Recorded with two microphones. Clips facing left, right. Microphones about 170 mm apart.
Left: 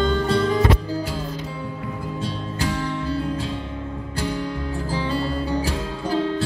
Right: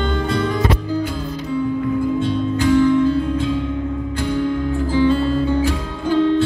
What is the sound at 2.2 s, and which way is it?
Music, 35° left (ahead or behind).